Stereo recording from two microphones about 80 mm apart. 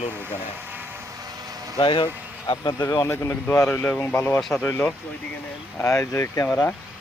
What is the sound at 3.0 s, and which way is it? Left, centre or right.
Speech, left.